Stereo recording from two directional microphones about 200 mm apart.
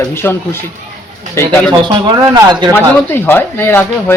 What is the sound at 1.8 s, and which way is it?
Speech, 20° right (ahead or behind).